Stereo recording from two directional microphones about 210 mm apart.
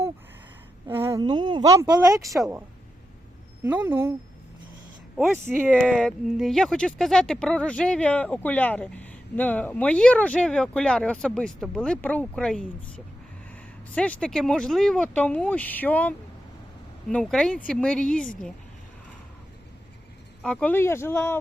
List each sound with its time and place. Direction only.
0.9 s a woman's voice: 10° right (ahead or behind)
5.1 s speech: centre (ahead or behind)
13.9 s speech: 5° left (ahead or behind)
20.4 s speech: 5° left (ahead or behind)